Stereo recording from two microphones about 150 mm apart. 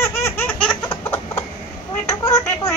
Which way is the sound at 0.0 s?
15° left (ahead or behind).